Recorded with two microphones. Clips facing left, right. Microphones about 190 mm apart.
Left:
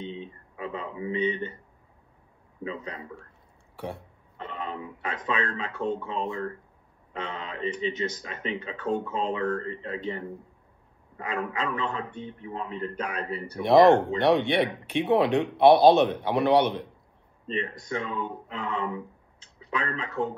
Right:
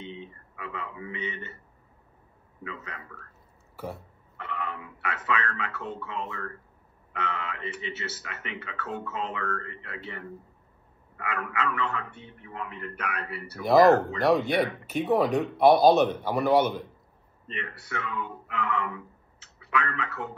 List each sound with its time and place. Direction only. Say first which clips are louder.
0.0 s a sound: left 4 dB; 20° left (ahead or behind)
1.1 s speech: left 12 dB; 15° left (ahead or behind)
2.6 s speech: left 6 dB; 30° left (ahead or behind)
3.7 s burping: left 1 dB; centre (ahead or behind)
4.4 s throat clearing: even; 15° left (ahead or behind)
4.9 s speech: left 1 dB; 15° left (ahead or behind)
9.6 s speech: left 7 dB; 25° left (ahead or behind)
11.6 s speech: left 1 dB; 15° left (ahead or behind)
13.8 s speech: left 1 dB; 30° left (ahead or behind)
14.2 s speech: even; centre (ahead or behind)
17.6 s speech: left 6 dB; 15° left (ahead or behind)